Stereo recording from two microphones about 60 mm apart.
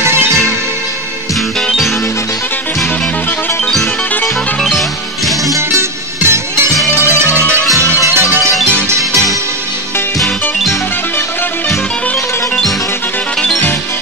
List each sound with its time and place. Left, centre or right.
4.6 s music: centre
5.5 s music: right
8.7 s music: right